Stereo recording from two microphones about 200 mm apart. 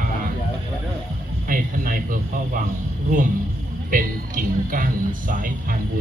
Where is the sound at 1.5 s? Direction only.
45° right (ahead or behind).